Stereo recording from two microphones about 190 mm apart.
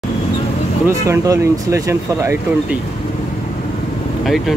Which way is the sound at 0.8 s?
15° right (ahead or behind).